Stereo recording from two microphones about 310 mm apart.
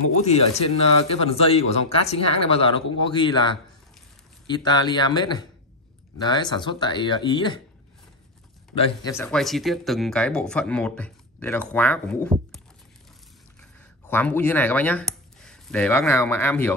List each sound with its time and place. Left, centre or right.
0.2 s speech: centre
8.7 s speech: centre
13.6 s speech: centre